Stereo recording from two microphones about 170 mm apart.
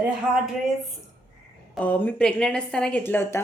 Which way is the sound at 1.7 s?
10° left (ahead or behind).